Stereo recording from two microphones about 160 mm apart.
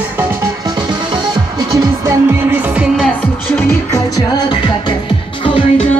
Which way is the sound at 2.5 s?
5° right (ahead or behind).